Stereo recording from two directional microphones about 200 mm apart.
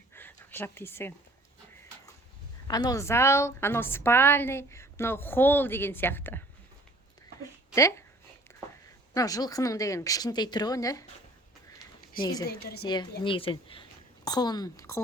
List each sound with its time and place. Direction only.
0.1 s a sound: 10° left (ahead or behind)
2.6 s a woman's voice: 20° left (ahead or behind)
7.7 s a woman's voice: 15° left (ahead or behind)
9.1 s a woman's voice: 20° left (ahead or behind)
12.2 s a woman's voice: 20° left (ahead or behind)
12.5 s a woman's voice: 55° left (ahead or behind)
13.2 s a woman's voice: 25° left (ahead or behind)